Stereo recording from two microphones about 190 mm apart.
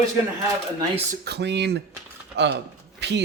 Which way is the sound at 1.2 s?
60° right (ahead or behind).